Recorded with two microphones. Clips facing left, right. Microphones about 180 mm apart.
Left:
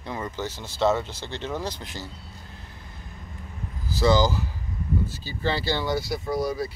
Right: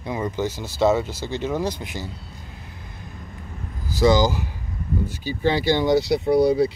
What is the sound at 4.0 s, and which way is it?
Speech, 15° right (ahead or behind).